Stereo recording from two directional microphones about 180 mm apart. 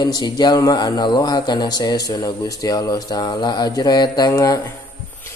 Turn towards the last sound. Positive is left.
turn(degrees=20)  # may be behind; listen again after turning